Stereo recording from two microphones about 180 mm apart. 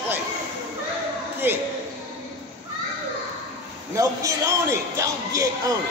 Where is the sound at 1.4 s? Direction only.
10° right (ahead or behind).